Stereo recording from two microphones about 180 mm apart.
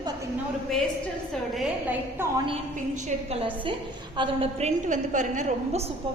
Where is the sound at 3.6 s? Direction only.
25° right (ahead or behind).